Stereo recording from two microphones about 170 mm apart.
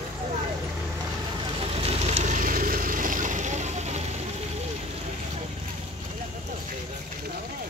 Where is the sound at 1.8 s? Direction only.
40° right (ahead or behind).